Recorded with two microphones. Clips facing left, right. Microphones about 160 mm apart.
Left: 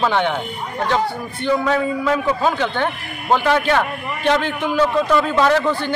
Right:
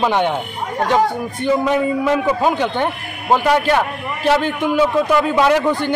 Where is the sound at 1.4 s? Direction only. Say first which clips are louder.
Right 2 dB; 15° right (ahead or behind).